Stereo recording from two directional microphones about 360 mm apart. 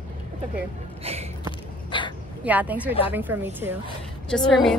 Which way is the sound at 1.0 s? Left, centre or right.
Centre.